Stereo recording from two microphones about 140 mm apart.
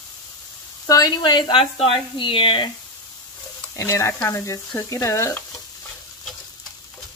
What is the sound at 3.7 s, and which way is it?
Speech, 20° left (ahead or behind).